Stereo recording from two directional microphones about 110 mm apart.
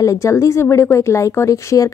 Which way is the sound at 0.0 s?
30° left (ahead or behind).